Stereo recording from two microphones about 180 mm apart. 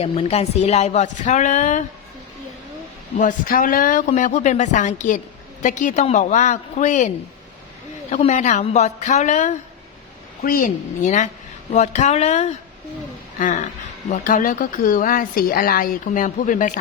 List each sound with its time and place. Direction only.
0.0 s speech: 35° left (ahead or behind)
3.2 s a woman's voice: 50° left (ahead or behind)
8.1 s speech: 40° left (ahead or behind)
10.4 s a woman's voice: 50° left (ahead or behind)
14.1 s a woman's voice: 50° left (ahead or behind)